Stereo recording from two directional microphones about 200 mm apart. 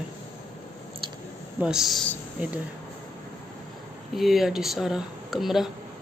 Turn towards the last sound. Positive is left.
turn(degrees=0)  # may be behind; listen again after turning